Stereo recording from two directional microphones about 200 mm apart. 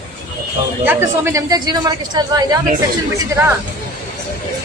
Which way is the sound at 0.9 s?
15° right (ahead or behind).